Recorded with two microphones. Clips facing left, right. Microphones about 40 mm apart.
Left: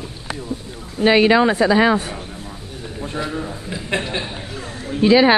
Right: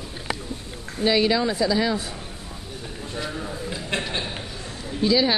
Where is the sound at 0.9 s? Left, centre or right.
Left.